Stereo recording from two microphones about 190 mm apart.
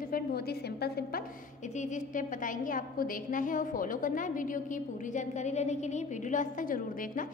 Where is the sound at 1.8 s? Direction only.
45° left (ahead or behind).